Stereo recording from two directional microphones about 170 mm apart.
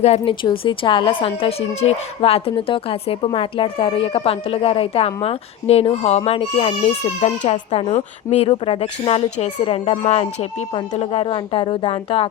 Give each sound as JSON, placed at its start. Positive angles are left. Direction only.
{"t": 0.0, "sound": "a woman's voice", "side_deg": 35}